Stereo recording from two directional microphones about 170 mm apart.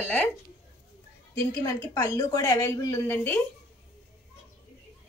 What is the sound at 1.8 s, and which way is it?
A woman's voice, 20° left (ahead or behind).